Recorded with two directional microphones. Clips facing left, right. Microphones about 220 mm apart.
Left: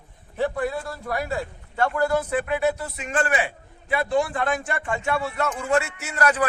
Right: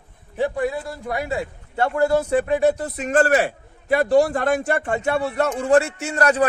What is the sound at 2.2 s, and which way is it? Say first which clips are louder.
A man's voice: right 5 dB; 40° right (ahead or behind).